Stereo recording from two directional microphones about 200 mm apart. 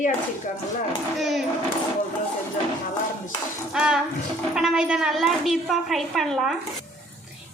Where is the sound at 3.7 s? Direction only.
5° right (ahead or behind).